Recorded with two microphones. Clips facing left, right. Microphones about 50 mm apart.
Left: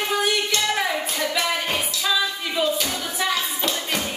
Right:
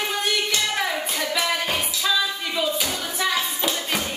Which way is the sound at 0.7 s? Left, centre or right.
Centre.